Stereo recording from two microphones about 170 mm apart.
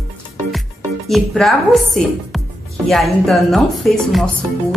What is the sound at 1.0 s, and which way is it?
A woman's voice, centre (ahead or behind).